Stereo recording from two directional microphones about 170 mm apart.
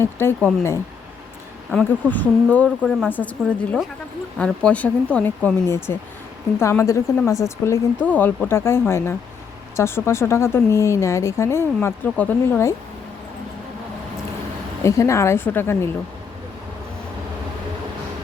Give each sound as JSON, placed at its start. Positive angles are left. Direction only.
{"t": 0.0, "sound": "speech", "side_deg": 15}
{"t": 3.4, "sound": "speech", "side_deg": 0}
{"t": 14.8, "sound": "speech", "side_deg": 15}